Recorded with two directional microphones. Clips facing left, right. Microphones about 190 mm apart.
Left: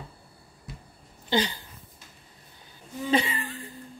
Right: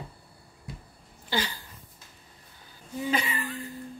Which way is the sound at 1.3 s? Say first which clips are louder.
Left 5 dB; 20° left (ahead or behind).